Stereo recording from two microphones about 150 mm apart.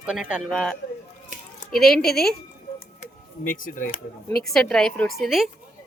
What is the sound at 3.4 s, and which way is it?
Speech, 65° left (ahead or behind).